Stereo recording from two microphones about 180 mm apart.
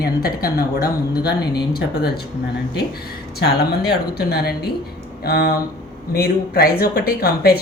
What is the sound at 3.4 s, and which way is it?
A woman's voice, 60° left (ahead or behind).